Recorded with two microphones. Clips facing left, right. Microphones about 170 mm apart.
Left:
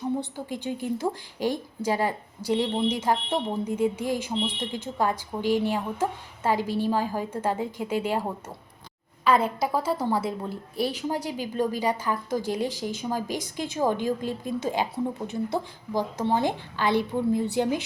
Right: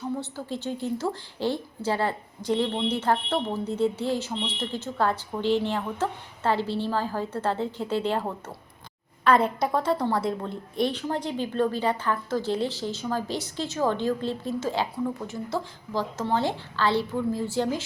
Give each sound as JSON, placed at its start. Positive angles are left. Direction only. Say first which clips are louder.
{"t": 0.2, "sound": "a woman's voice", "louder": "even", "side_deg": 15}